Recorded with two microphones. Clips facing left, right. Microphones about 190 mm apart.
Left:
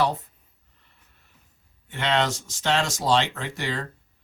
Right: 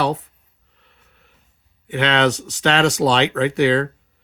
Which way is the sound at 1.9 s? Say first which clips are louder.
Right 6 dB; 70° right (ahead or behind).